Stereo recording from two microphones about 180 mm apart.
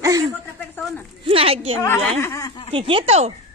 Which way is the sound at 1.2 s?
30° right (ahead or behind).